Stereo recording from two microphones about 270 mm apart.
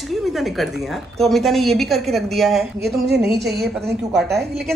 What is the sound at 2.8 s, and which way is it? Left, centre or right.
A woman's voice, right.